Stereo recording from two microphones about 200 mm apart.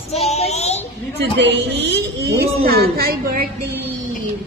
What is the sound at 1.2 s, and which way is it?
A man's voice, 60° right (ahead or behind).